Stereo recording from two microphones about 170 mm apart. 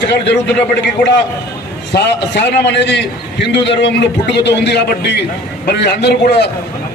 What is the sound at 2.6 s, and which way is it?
A man's voice, 90° left.